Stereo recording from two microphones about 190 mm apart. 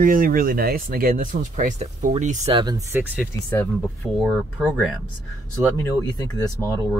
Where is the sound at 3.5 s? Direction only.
10° left (ahead or behind).